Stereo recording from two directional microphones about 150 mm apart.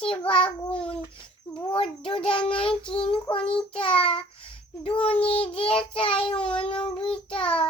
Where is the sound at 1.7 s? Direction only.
35° left (ahead or behind).